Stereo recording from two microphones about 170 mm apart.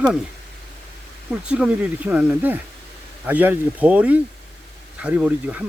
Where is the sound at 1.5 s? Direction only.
5° right (ahead or behind).